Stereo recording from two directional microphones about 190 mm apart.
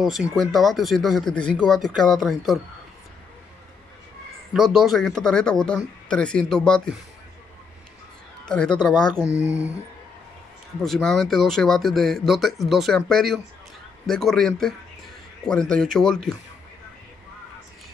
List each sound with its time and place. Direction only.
0.0 s speech: centre (ahead or behind)
4.6 s speech: centre (ahead or behind)
8.5 s speech: 5° left (ahead or behind)
9.3 s speech: 15° left (ahead or behind)
10.8 s speech: centre (ahead or behind)